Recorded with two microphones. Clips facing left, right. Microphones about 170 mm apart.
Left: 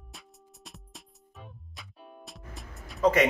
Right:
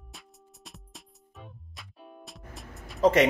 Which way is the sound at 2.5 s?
Centre (ahead or behind).